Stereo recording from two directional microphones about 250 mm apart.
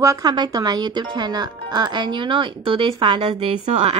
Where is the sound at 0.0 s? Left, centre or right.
Centre.